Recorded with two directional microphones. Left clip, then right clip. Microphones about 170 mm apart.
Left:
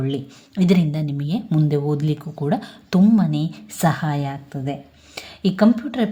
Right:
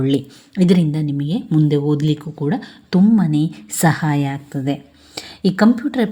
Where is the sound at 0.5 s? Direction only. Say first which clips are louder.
Right 3 dB; 20° right (ahead or behind).